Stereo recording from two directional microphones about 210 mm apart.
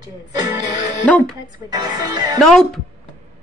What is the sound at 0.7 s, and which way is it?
Music, 35° left (ahead or behind).